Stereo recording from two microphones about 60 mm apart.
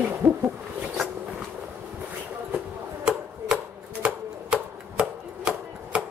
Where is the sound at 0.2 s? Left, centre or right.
Right.